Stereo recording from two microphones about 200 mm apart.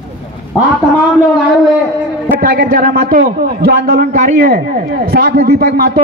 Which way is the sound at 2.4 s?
50° right (ahead or behind).